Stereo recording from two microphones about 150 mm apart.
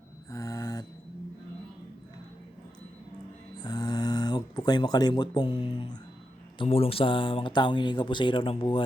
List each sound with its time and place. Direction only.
0.3 s mantra: 20° left (ahead or behind)
3.6 s a sound: 25° left (ahead or behind)
6.6 s speech: 40° left (ahead or behind)